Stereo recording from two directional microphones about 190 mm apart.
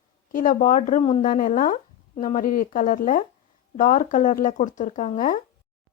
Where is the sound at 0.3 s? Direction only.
45° left (ahead or behind).